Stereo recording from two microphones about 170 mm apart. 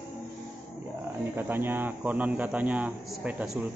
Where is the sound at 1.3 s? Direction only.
10° right (ahead or behind).